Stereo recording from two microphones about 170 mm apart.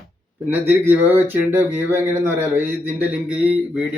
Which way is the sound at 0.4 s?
10° right (ahead or behind).